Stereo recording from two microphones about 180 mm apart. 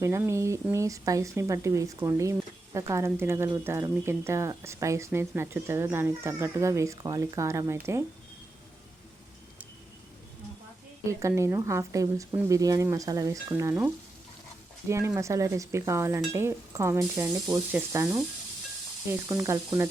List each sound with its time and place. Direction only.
0.0 s speech: 15° right (ahead or behind)
11.1 s speech: 15° right (ahead or behind)
19.3 s speech: 20° right (ahead or behind)